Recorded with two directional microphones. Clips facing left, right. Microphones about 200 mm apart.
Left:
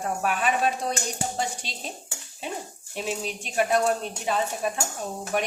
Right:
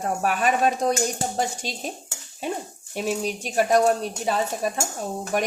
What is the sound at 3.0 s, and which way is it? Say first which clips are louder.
A woman's voice: right 5 dB; 40° right (ahead or behind).